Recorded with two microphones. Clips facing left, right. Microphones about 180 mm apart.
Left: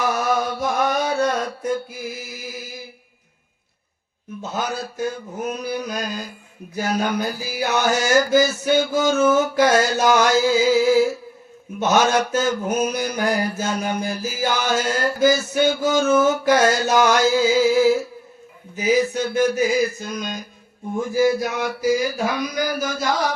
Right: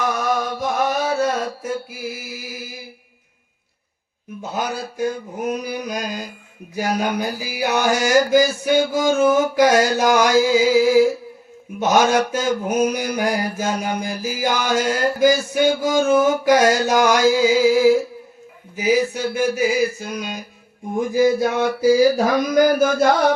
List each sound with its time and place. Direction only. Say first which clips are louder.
0.1 s mantra: even; centre (ahead or behind)
4.4 s mantra: right 1 dB; 15° right (ahead or behind)
20.9 s speech: right 2 dB; 15° right (ahead or behind); by 23.3 s 55° right (ahead or behind)